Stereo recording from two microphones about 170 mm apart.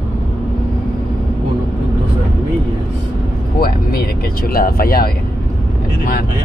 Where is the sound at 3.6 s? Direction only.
60° left (ahead or behind).